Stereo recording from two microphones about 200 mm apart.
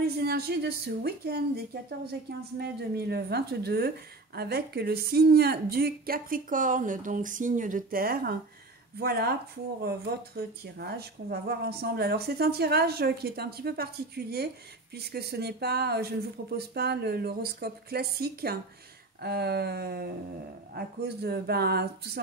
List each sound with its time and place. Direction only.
0.2 s speech: 50° right (ahead or behind)
2.6 s speech: 55° right (ahead or behind)